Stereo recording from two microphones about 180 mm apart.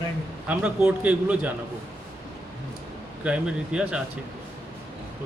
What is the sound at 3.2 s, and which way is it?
Speech, 5° right (ahead or behind).